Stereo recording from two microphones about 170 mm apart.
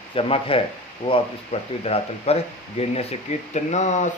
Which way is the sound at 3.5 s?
45° left (ahead or behind).